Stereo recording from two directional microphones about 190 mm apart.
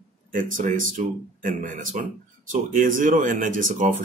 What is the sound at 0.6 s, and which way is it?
Speech, 45° right (ahead or behind).